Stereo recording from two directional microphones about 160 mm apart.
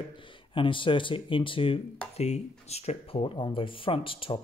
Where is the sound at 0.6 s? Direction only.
30° left (ahead or behind).